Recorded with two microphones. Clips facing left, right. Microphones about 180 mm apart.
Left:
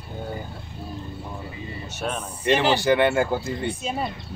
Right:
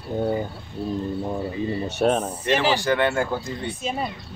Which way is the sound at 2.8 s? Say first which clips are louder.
Left 2 dB; 15° left (ahead or behind).